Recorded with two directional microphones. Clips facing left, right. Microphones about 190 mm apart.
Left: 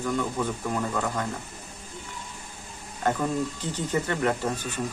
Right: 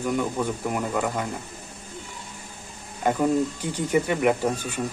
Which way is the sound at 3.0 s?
15° right (ahead or behind).